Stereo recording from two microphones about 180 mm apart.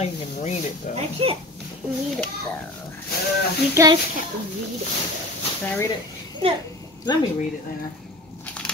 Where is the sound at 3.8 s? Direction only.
15° right (ahead or behind).